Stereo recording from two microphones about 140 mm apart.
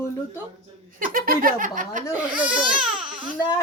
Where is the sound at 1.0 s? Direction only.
90° right; by 2.0 s 75° right (ahead or behind).